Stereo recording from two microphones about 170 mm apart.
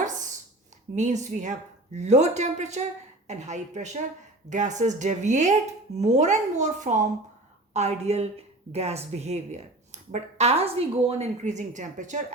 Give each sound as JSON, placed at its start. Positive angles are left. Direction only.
{"t": 0.9, "sound": "a woman's voice", "side_deg": -45}